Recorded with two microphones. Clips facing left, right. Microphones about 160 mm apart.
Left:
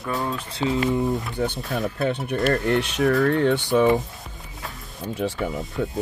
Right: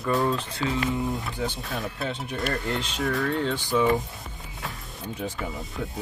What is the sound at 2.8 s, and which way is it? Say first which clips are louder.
Speech: left 7 dB; 70° left (ahead or behind).